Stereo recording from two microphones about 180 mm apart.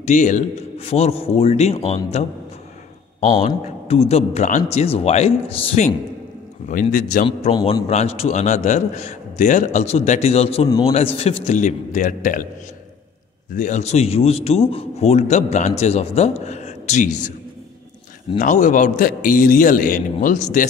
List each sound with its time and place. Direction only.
0.0 s a man's voice: 40° left (ahead or behind)
3.4 s a man's voice: 35° left (ahead or behind)
6.7 s a man's voice: 50° left (ahead or behind)
7.2 s a man's voice: 30° left (ahead or behind); by 12.4 s 50° left (ahead or behind)
13.6 s a man's voice: 40° left (ahead or behind)
18.4 s a man's voice: 45° left (ahead or behind)